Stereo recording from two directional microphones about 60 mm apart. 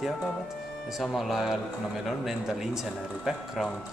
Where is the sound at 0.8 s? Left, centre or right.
Centre.